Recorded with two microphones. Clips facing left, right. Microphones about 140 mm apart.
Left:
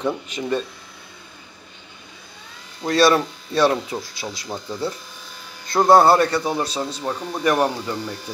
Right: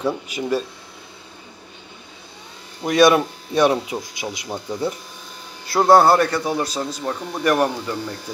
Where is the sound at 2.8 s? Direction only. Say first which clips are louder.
Right 2 dB; 15° right (ahead or behind).